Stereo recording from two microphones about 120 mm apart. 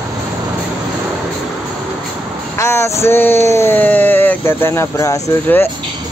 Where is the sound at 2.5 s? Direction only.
25° left (ahead or behind).